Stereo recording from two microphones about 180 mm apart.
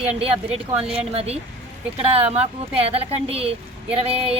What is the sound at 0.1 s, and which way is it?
Speech, 35° right (ahead or behind).